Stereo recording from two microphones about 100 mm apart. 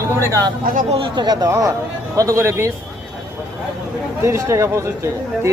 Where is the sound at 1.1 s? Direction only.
45° right (ahead or behind); by 2.7 s 30° right (ahead or behind).